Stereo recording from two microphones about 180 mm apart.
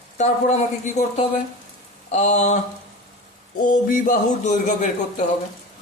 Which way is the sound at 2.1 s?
40° left (ahead or behind).